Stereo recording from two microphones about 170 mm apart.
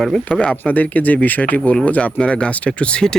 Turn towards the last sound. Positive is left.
turn(degrees=5)  # may be behind; listen again after turning